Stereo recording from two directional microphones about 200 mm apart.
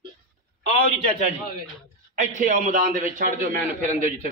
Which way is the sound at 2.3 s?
40° right (ahead or behind).